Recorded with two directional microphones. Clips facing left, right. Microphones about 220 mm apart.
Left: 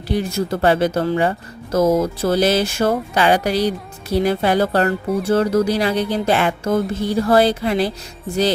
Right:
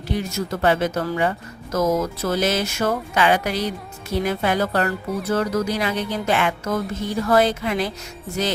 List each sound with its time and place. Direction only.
0.1 s speech: 30° left (ahead or behind)